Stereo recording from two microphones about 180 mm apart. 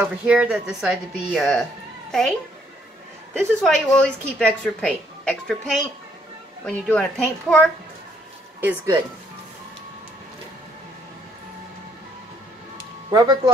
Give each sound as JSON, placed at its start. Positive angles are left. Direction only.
{"t": 0.0, "sound": "a woman's voice", "side_deg": -5}
{"t": 3.3, "sound": "a woman's voice", "side_deg": 5}
{"t": 6.6, "sound": "a woman's voice", "side_deg": 5}
{"t": 8.5, "sound": "speech", "side_deg": -10}
{"t": 13.1, "sound": "speech", "side_deg": -20}